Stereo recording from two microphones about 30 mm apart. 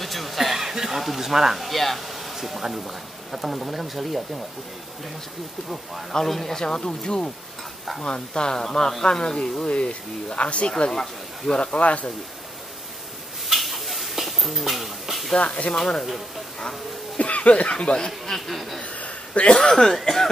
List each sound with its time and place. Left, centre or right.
0.0 s a sound: centre
2.7 s speech: centre
6.2 s speech: centre
6.6 s speech: left
10.9 s speech: centre
11.5 s speech: left
11.8 s speech: left
13.5 s a sound: centre
15.3 s speech: left
15.7 s speech: centre
17.2 s speech: left
18.3 s speech: centre
18.8 s a sound: left
19.5 s speech: centre